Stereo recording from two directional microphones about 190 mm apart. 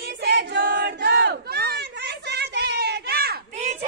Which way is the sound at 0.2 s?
65° right (ahead or behind).